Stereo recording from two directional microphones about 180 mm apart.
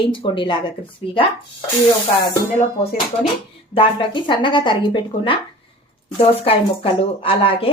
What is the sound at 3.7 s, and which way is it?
A woman's voice, 30° left (ahead or behind).